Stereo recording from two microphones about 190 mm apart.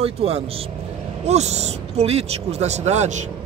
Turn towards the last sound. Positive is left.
turn(degrees=-40)  # may be behind; listen again after turning